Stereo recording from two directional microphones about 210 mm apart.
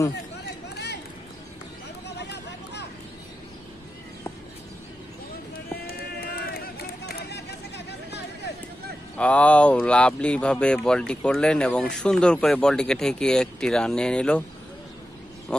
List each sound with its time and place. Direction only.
2.0 s vehicle: 55° left (ahead or behind)
5.9 s a sound: 45° left (ahead or behind)
9.1 s speech: 5° left (ahead or behind)